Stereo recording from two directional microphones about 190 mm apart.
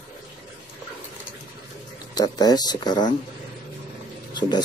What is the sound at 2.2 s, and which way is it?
Speech, 20° left (ahead or behind).